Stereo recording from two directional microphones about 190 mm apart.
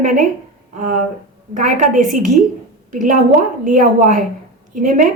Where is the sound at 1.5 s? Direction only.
40° right (ahead or behind).